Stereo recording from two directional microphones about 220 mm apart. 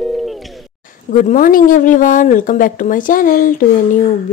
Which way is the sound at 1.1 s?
35° left (ahead or behind).